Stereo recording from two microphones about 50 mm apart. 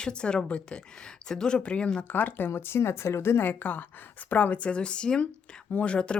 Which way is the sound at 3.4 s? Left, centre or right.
Left.